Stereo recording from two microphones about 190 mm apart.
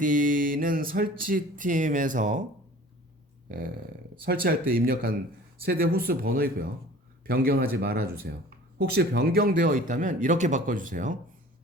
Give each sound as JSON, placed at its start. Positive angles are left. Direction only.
{"t": 0.0, "sound": "speech", "side_deg": -45}
{"t": 4.3, "sound": "speech", "side_deg": -50}